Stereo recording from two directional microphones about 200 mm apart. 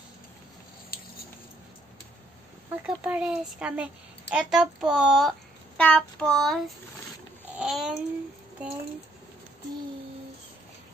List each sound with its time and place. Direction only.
0.8 s a sound: 50° left (ahead or behind)
2.7 s a woman's voice: 5° right (ahead or behind)
7.5 s babbling: centre (ahead or behind)